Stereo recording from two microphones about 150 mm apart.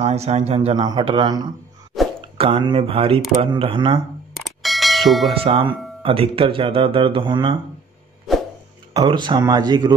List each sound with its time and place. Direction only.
0.0 s a man's voice: 45° right (ahead or behind)
0.7 s speech: 30° right (ahead or behind)
2.0 s plop: centre (ahead or behind)
2.3 s speech: 35° right (ahead or behind)
4.6 s bell: centre (ahead or behind)
5.3 s speech: 35° right (ahead or behind)
8.9 s speech: 30° right (ahead or behind)